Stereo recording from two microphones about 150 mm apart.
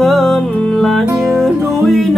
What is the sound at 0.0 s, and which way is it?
Music, centre (ahead or behind).